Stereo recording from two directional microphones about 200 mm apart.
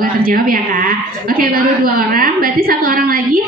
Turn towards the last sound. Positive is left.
turn(degrees=-45)  # may be behind; listen again after turning